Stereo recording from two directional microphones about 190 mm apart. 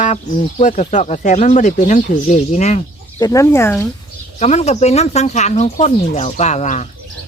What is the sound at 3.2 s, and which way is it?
Speech, 20° left (ahead or behind).